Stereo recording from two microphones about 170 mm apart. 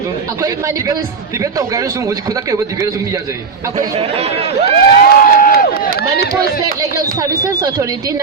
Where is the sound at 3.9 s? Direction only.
35° right (ahead or behind).